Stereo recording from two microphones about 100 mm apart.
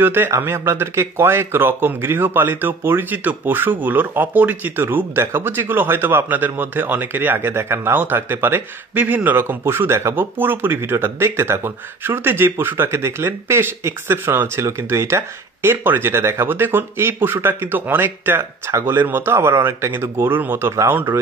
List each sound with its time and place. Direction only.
0.0 s speech: 20° right (ahead or behind)